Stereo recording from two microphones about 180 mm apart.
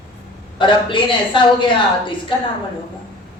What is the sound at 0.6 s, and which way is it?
Speech, 25° left (ahead or behind).